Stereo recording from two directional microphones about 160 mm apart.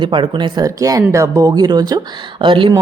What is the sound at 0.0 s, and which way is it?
A woman's voice, 30° right (ahead or behind).